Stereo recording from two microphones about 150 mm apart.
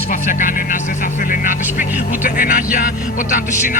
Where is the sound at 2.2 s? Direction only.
70° left (ahead or behind).